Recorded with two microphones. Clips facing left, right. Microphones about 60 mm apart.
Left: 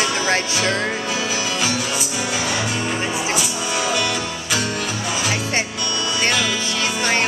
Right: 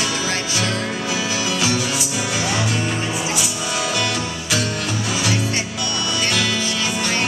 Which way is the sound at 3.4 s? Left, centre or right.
Centre.